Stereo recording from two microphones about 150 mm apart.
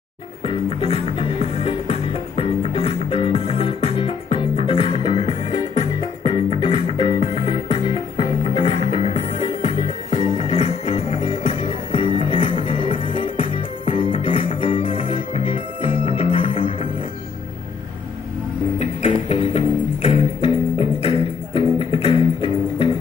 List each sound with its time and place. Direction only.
0.5 s music: 40° left (ahead or behind)
18.8 s music: 40° left (ahead or behind)
21.5 s music: 35° left (ahead or behind)